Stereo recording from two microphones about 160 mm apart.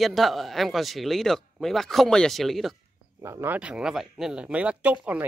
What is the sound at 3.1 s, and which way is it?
Speech, 15° right (ahead or behind).